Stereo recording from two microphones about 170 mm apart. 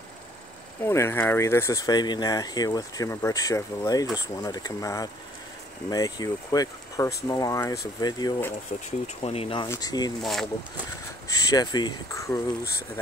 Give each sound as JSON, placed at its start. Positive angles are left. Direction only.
{"t": 0.8, "sound": "speech", "side_deg": 15}
{"t": 9.0, "sound": "speech", "side_deg": 35}
{"t": 9.7, "sound": "speech", "side_deg": 20}
{"t": 10.2, "sound": "speech", "side_deg": 0}
{"t": 11.2, "sound": "speech", "side_deg": 20}